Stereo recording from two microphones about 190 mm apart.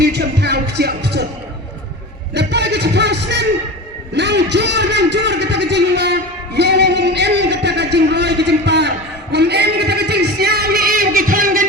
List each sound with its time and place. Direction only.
0.0 s music: 60° right (ahead or behind)
2.3 s music: 65° right (ahead or behind)
4.1 s a sound: 65° right (ahead or behind)
9.3 s music: 60° right (ahead or behind)